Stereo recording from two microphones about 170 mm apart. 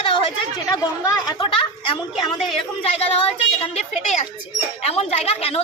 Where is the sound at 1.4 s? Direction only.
30° left (ahead or behind).